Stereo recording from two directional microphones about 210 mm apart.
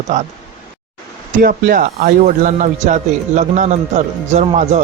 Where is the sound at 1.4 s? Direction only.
45° right (ahead or behind).